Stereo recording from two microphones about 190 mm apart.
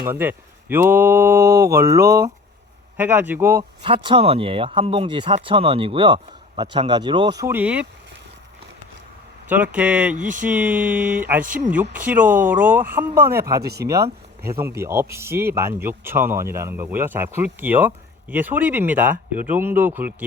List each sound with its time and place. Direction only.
0.1 s speech: 10° right (ahead or behind)
3.6 s speech: 30° right (ahead or behind); by 7.9 s 10° right (ahead or behind)
9.5 s speech: 5° right (ahead or behind)
10.2 s speech: 40° right (ahead or behind)
10.7 s speech: 10° right (ahead or behind)
11.4 s speech: 45° right (ahead or behind)
11.7 s speech: 10° right (ahead or behind)